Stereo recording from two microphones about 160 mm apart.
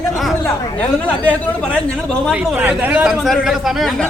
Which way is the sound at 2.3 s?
10° right (ahead or behind).